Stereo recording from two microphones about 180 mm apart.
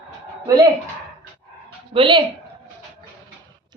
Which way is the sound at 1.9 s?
30° right (ahead or behind).